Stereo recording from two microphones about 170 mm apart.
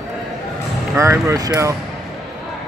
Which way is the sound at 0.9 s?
15° right (ahead or behind).